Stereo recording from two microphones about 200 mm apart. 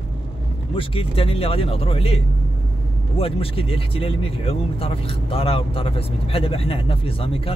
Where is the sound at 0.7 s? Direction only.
25° left (ahead or behind).